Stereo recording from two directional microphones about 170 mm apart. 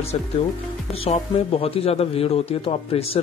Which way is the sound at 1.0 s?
40° left (ahead or behind).